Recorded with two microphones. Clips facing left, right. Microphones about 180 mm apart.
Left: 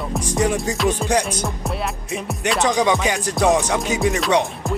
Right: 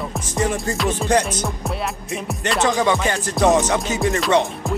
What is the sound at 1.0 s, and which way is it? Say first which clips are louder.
Music: right 1 dB; 10° left (ahead or behind).